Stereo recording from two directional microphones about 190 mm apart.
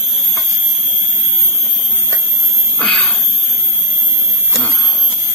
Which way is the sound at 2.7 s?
5° left (ahead or behind).